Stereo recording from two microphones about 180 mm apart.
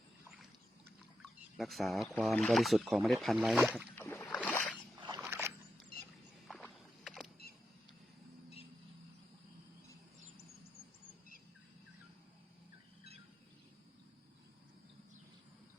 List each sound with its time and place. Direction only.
1.5 s speech: centre (ahead or behind)
3.9 s boat: 10° left (ahead or behind)
4.9 s boat: 25° right (ahead or behind)
5.2 s boat: 10° right (ahead or behind)
6.5 s rowboat: centre (ahead or behind)